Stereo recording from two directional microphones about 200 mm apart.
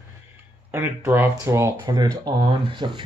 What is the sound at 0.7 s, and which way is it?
Speech, 10° right (ahead or behind).